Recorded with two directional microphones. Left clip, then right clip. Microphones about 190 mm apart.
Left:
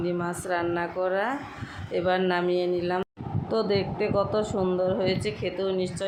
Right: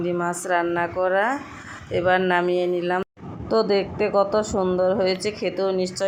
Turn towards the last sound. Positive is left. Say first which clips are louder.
# right 5 dB
turn(degrees=-20)  # may be behind; listen again after turning